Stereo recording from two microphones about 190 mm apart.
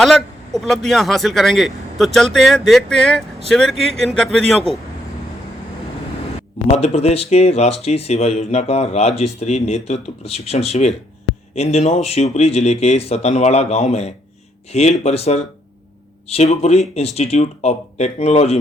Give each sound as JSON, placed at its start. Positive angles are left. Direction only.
{"t": 0.0, "sound": "a man's voice", "side_deg": 0}
{"t": 6.7, "sound": "speech", "side_deg": 35}